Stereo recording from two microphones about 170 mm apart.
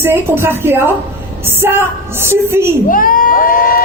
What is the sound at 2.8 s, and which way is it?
Crowd, 55° left (ahead or behind).